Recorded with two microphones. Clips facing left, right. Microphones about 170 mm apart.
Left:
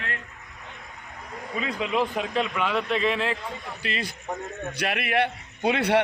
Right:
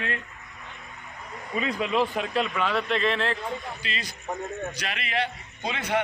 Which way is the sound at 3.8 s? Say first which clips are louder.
Left 3 dB; 60° left (ahead or behind).